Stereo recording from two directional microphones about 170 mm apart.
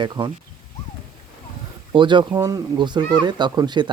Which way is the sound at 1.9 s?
30° right (ahead or behind).